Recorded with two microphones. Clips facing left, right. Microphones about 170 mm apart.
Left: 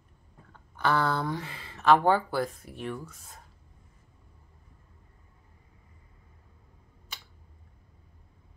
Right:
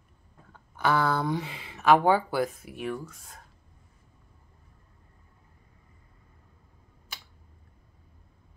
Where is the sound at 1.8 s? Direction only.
10° right (ahead or behind).